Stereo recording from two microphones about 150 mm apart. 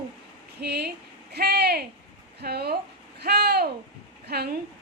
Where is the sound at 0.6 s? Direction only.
90° right.